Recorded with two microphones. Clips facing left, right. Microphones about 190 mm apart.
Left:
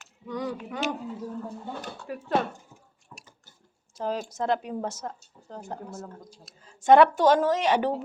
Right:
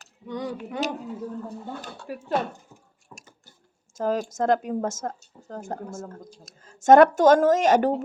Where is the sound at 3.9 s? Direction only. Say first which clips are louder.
Right 5 dB; 45° right (ahead or behind).